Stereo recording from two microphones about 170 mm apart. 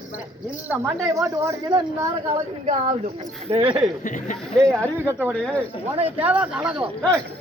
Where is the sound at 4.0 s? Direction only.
50° left (ahead or behind).